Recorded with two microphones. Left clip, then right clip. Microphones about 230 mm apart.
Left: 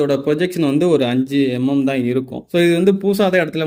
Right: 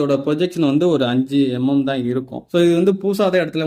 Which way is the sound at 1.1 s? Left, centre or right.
Left.